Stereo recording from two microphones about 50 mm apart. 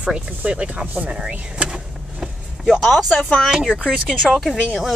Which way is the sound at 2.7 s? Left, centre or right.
Centre.